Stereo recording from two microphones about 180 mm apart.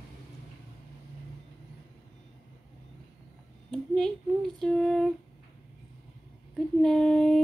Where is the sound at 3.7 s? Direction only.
5° left (ahead or behind).